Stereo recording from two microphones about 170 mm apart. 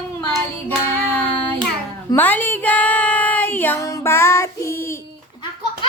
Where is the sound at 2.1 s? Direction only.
10° left (ahead or behind).